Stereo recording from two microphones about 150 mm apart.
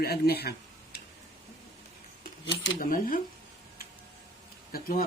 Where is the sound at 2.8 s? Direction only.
70° left (ahead or behind).